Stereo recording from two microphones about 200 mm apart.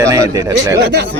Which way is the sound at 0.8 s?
60° right (ahead or behind).